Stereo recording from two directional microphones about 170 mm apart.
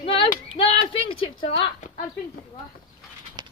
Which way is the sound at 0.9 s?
30° left (ahead or behind).